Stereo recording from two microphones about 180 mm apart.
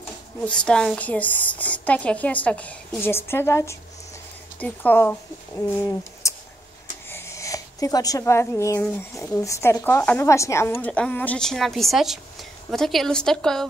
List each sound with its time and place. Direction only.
0.5 s a woman's voice: 5° left (ahead or behind)
5.8 s a sound: 15° left (ahead or behind)
9.1 s a woman's voice: 15° left (ahead or behind)